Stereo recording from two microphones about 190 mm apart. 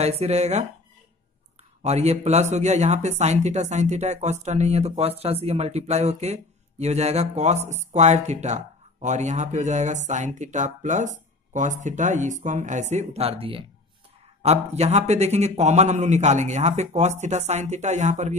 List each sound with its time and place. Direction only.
0.0 s speech: 35° right (ahead or behind)
1.8 s speech: 35° right (ahead or behind)